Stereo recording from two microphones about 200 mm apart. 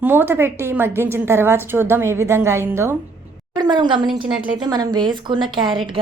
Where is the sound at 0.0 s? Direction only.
10° right (ahead or behind).